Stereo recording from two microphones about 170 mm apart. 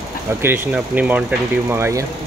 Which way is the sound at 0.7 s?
5° right (ahead or behind).